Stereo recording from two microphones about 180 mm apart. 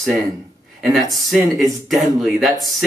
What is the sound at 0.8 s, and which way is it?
Speech, centre (ahead or behind).